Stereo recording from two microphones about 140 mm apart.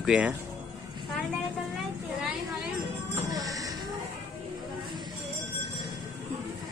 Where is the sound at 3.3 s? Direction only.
25° right (ahead or behind).